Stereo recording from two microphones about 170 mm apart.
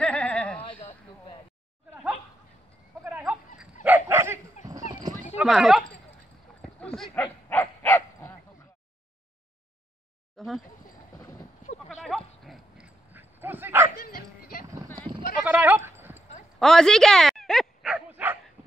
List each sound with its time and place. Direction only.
0.0 s a sound: 5° left (ahead or behind)
3.0 s sheep: 10° right (ahead or behind)
3.8 s dog: 10° right (ahead or behind)
4.6 s clip-clop: 20° right (ahead or behind)
5.4 s speech: centre (ahead or behind)
6.6 s a sound: 5° left (ahead or behind)
7.4 s dog: 15° left (ahead or behind)
10.3 s a sound: centre (ahead or behind)
11.1 s clip-clop: 20° left (ahead or behind)
12.0 s dog: centre (ahead or behind)
13.9 s dog: 60° left (ahead or behind)
15.4 s sheep: 10° right (ahead or behind)
16.5 s dog: 5° left (ahead or behind)